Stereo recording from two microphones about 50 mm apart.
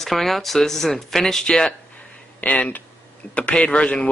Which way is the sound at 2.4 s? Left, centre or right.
Left.